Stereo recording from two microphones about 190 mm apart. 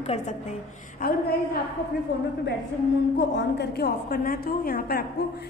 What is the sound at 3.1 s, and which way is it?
A woman's voice, 70° left (ahead or behind).